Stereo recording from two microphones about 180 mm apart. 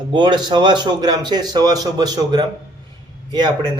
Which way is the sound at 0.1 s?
25° right (ahead or behind).